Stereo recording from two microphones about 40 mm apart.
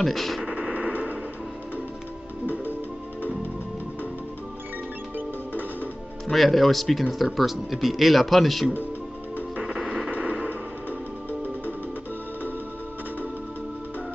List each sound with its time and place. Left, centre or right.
0.0 s speech: centre
0.4 s a sound: right
0.7 s tick-tock: right
6.3 s speech: centre
9.6 s music: centre
10.1 s a sound: right